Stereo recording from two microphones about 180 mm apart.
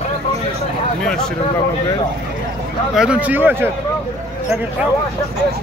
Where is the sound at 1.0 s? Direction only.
5° left (ahead or behind).